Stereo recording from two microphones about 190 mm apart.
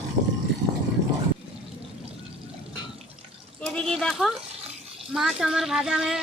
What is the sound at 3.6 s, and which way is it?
Speech, 5° left (ahead or behind).